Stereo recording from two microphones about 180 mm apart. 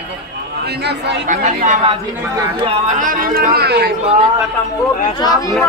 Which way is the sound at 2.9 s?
50° right (ahead or behind).